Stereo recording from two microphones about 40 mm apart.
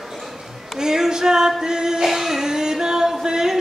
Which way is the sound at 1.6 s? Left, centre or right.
Centre.